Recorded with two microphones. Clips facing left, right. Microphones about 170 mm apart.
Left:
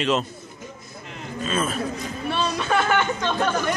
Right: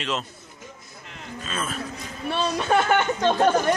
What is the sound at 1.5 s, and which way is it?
Speech, 15° left (ahead or behind).